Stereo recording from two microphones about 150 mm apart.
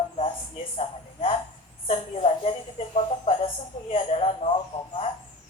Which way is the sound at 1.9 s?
40° left (ahead or behind).